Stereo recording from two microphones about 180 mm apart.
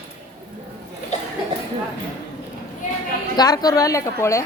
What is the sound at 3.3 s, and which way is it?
A woman's voice, 20° left (ahead or behind).